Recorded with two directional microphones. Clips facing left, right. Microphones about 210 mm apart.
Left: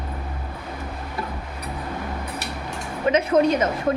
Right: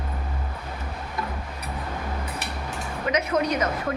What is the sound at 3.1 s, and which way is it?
Speech, 25° left (ahead or behind).